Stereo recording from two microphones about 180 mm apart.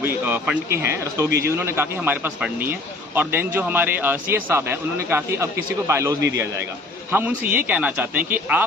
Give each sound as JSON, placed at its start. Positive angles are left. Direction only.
{"t": 0.0, "sound": "a man's voice", "side_deg": -10}